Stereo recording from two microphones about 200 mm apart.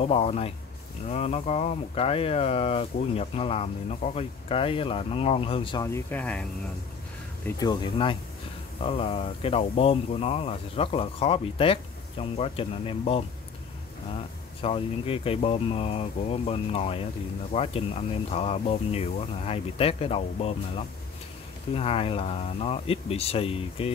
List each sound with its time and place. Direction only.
0.0 s speech: 30° left (ahead or behind)
5.9 s speech: 10° left (ahead or behind)
7.4 s speech: 20° left (ahead or behind)
14.6 s speech: 30° left (ahead or behind)